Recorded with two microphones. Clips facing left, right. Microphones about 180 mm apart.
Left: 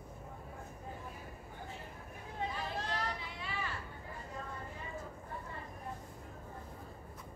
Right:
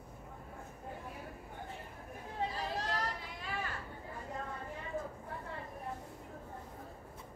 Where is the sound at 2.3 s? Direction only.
35° right (ahead or behind).